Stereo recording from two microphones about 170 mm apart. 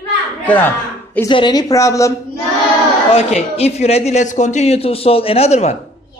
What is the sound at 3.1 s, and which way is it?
A man's voice, 35° left (ahead or behind).